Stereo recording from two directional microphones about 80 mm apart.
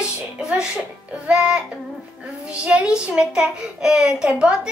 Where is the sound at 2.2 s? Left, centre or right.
Centre.